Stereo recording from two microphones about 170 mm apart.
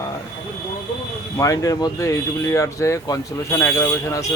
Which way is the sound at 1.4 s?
20° left (ahead or behind).